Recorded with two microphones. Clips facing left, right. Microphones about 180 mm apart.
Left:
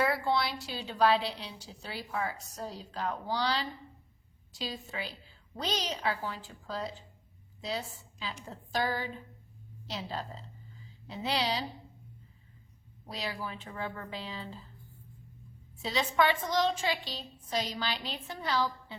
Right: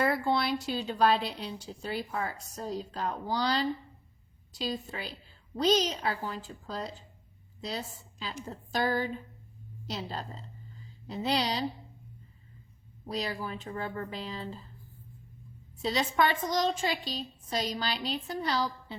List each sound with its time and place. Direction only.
0.0 s a woman's voice: 50° right (ahead or behind)
13.1 s a woman's voice: 40° right (ahead or behind)
15.8 s a woman's voice: 40° right (ahead or behind)